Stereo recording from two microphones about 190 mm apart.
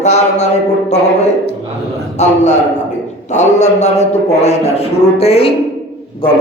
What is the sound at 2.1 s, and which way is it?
A man's voice, 35° left (ahead or behind).